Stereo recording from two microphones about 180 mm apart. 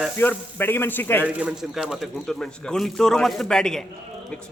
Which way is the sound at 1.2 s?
5° right (ahead or behind).